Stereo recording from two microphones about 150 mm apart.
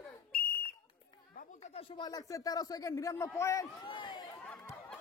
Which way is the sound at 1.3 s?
45° left (ahead or behind).